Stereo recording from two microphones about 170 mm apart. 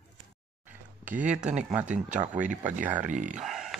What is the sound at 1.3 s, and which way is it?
Speech, 45° right (ahead or behind).